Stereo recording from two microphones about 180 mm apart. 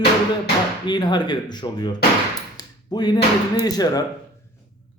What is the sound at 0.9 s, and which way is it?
A man's voice, 25° left (ahead or behind).